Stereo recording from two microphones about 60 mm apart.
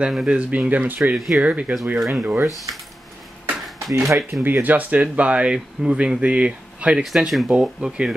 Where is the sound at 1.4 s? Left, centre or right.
Right.